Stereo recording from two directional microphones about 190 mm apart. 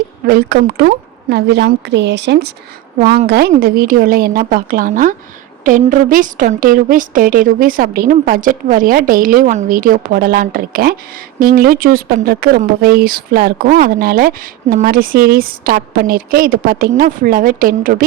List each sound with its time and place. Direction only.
0.3 s speech: 50° right (ahead or behind)
1.3 s a woman's voice: 65° right (ahead or behind)
3.2 s speech: 50° right (ahead or behind)